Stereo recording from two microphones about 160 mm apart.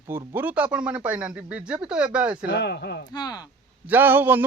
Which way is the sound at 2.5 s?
90° left.